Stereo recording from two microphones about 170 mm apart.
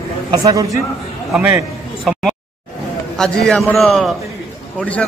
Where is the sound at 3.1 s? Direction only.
5° left (ahead or behind).